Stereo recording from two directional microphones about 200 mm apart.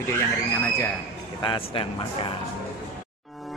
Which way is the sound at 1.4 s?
25° left (ahead or behind).